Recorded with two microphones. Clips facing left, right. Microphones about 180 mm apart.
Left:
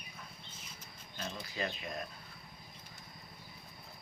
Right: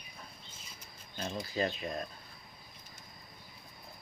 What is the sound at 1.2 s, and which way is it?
Speech, 35° right (ahead or behind).